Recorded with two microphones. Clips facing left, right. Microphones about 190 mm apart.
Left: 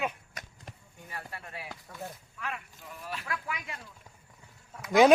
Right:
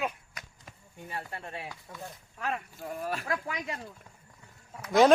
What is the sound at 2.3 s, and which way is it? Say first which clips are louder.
Speech: right 8 dB; 40° right (ahead or behind).